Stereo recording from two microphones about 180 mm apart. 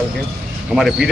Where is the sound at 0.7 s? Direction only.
Centre (ahead or behind).